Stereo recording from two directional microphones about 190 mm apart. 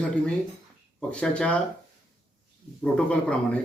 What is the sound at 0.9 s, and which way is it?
Speech, 5° left (ahead or behind).